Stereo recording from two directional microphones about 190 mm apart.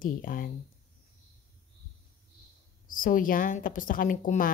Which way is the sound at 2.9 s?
45° left (ahead or behind).